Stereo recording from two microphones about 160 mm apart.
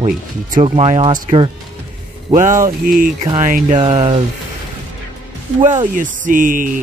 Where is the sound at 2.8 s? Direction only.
60° right (ahead or behind).